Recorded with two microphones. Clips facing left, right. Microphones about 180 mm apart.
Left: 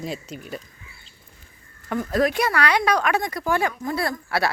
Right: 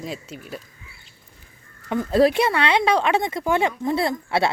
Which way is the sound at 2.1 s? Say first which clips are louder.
Right 4 dB; 30° right (ahead or behind).